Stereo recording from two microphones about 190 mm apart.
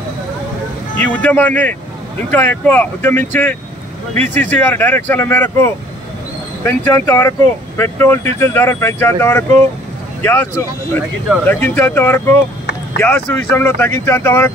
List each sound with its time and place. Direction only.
0.9 s speech: 10° left (ahead or behind)